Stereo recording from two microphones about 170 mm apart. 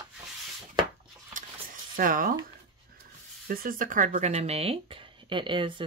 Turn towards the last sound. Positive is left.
turn(degrees=-30)  # may be behind; listen again after turning